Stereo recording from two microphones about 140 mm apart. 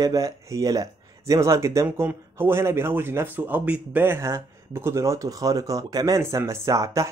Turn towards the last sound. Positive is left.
turn(degrees=-20)  # may be behind; listen again after turning